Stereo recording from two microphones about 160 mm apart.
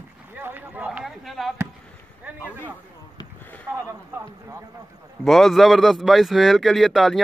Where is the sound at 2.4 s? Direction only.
10° left (ahead or behind).